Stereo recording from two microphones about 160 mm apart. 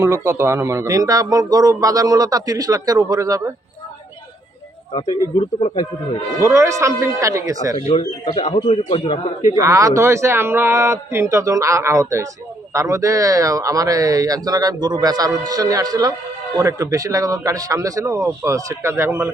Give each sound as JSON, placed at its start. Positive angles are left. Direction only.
{"t": 0.0, "sound": "a man's voice", "side_deg": -15}
{"t": 4.9, "sound": "a man's voice", "side_deg": 30}
{"t": 5.7, "sound": "speech", "side_deg": 25}
{"t": 6.4, "sound": "a man's voice", "side_deg": -20}
{"t": 7.8, "sound": "a man's voice", "side_deg": 40}
{"t": 8.8, "sound": "a man's voice", "side_deg": 40}
{"t": 9.6, "sound": "a man's voice", "side_deg": -20}